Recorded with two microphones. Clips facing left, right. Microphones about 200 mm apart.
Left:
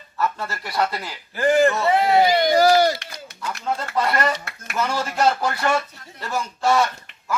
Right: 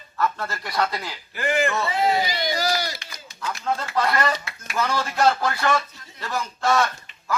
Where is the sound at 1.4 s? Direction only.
40° left (ahead or behind).